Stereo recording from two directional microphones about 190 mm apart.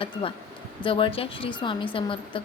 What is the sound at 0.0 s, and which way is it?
A woman's voice, 30° left (ahead or behind).